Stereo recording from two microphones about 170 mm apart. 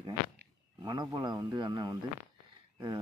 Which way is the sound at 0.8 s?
25° right (ahead or behind).